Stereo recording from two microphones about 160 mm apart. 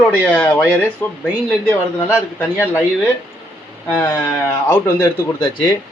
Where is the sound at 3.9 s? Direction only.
10° left (ahead or behind); by 5.7 s 25° left (ahead or behind).